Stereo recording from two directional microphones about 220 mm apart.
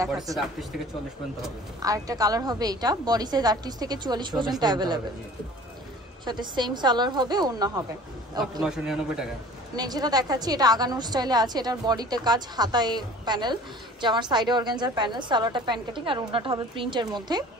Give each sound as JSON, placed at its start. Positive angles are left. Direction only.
{"t": 1.8, "sound": "a woman's voice", "side_deg": -15}
{"t": 6.2, "sound": "a woman's voice", "side_deg": -20}
{"t": 8.6, "sound": "a man's voice", "side_deg": -5}
{"t": 9.8, "sound": "a woman's voice", "side_deg": -15}